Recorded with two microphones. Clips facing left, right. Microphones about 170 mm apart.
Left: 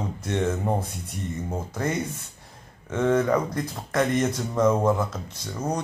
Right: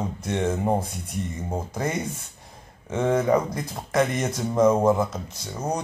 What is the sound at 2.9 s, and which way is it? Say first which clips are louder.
Speech: right 1 dB; 20° right (ahead or behind).